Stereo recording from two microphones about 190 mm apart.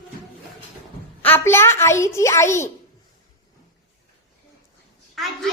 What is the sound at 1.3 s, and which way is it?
A woman's voice, 10° left (ahead or behind).